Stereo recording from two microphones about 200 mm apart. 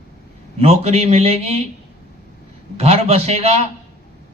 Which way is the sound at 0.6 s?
30° right (ahead or behind).